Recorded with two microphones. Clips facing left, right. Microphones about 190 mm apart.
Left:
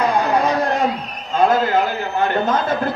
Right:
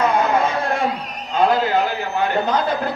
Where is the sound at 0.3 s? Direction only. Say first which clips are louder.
Left 2 dB; 35° left (ahead or behind).